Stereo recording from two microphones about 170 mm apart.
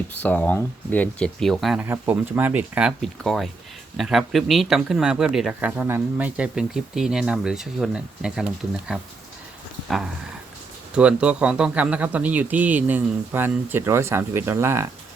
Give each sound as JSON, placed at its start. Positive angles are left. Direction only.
{"t": 0.1, "sound": "speech", "side_deg": 10}
{"t": 1.8, "sound": "a man's voice", "side_deg": -15}
{"t": 10.9, "sound": "a man's voice", "side_deg": -5}